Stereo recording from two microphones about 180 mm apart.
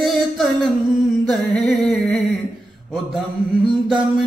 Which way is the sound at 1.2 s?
5° left (ahead or behind).